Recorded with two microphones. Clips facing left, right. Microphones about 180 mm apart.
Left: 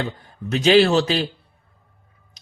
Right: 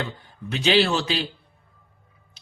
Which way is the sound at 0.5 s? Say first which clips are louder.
Left 6 dB; 45° left (ahead or behind).